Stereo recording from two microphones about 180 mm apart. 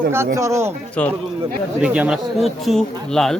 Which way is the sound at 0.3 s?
15° right (ahead or behind).